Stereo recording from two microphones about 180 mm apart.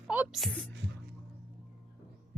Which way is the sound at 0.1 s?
5° right (ahead or behind).